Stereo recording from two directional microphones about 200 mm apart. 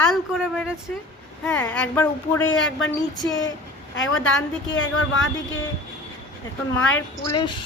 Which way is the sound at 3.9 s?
75° left (ahead or behind).